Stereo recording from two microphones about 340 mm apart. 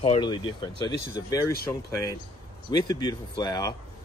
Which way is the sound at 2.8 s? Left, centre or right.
Centre.